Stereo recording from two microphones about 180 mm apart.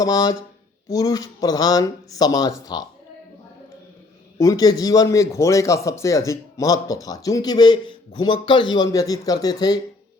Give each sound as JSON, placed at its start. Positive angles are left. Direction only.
{"t": 0.0, "sound": "a man's voice", "side_deg": 20}
{"t": 4.4, "sound": "a man's voice", "side_deg": 20}